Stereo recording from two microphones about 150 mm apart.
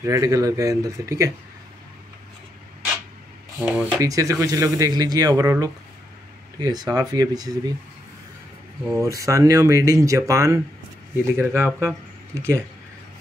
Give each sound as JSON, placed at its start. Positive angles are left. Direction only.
{"t": 0.0, "sound": "speech", "side_deg": -20}
{"t": 3.5, "sound": "speech", "side_deg": -10}
{"t": 8.9, "sound": "speech", "side_deg": -20}